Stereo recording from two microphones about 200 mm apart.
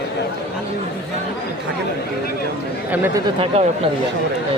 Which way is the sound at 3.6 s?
30° right (ahead or behind).